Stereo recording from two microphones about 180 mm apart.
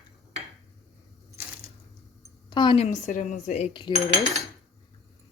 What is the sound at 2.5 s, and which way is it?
A woman's voice, 25° left (ahead or behind).